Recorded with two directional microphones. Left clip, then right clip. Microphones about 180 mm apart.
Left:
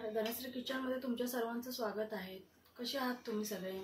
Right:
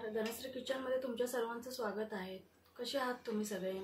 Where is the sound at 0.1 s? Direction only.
5° right (ahead or behind).